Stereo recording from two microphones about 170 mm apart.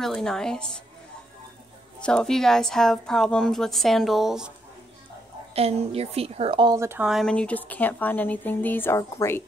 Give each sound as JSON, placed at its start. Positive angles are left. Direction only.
{"t": 0.0, "sound": "a woman's voice", "side_deg": 5}
{"t": 2.0, "sound": "a woman's voice", "side_deg": 5}
{"t": 5.5, "sound": "a woman's voice", "side_deg": -35}
{"t": 6.8, "sound": "speech", "side_deg": -15}
{"t": 7.1, "sound": "speech", "side_deg": 0}